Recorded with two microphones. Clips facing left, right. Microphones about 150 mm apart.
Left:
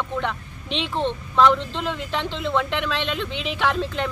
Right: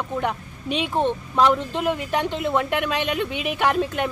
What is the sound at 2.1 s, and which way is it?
Speech, 45° right (ahead or behind).